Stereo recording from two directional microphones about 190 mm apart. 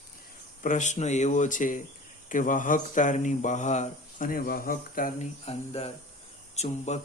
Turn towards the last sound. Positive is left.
turn(degrees=35)  # may be behind; listen again after turning